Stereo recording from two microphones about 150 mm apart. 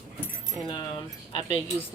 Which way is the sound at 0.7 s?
35° left (ahead or behind).